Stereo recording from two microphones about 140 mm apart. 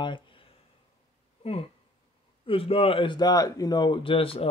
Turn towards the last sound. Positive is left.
turn(degrees=40)  # may be behind; listen again after turning